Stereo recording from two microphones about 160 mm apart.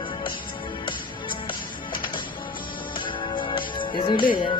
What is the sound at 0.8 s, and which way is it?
Music, 30° left (ahead or behind).